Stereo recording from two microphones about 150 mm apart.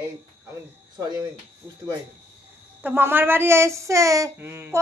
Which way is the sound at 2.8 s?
15° right (ahead or behind).